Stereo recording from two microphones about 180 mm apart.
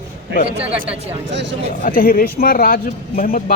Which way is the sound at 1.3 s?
80° right.